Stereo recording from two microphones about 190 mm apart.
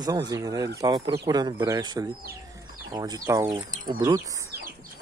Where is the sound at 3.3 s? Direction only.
15° right (ahead or behind).